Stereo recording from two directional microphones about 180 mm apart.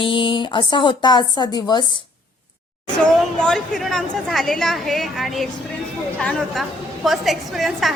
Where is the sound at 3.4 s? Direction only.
5° left (ahead or behind).